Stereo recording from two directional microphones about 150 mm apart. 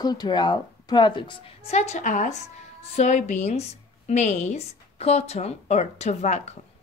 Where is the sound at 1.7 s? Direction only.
50° left (ahead or behind).